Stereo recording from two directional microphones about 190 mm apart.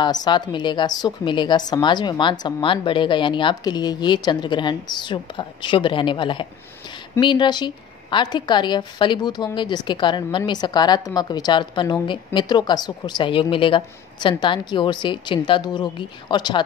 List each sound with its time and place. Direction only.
0.0 s a woman's voice: 20° left (ahead or behind)